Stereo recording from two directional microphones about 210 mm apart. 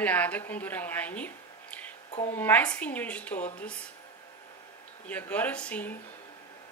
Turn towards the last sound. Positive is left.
turn(degrees=5)  # may be behind; listen again after turning